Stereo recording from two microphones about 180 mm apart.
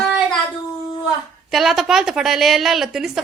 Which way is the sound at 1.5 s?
Centre (ahead or behind).